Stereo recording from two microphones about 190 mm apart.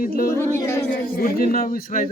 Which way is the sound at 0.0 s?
50° left (ahead or behind).